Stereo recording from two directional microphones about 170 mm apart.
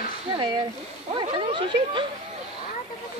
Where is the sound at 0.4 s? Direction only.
25° right (ahead or behind).